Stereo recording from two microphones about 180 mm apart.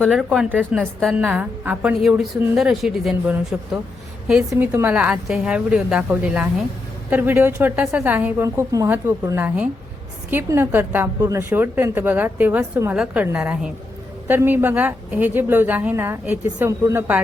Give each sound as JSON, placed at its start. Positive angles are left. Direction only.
{"t": 0.0, "sound": "a woman's voice", "side_deg": 0}